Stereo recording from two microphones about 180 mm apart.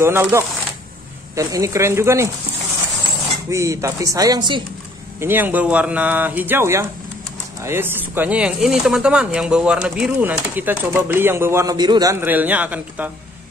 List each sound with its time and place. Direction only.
0.0 s speech: 15° right (ahead or behind)
3.4 s speech: 15° right (ahead or behind)
5.2 s speech: 10° right (ahead or behind)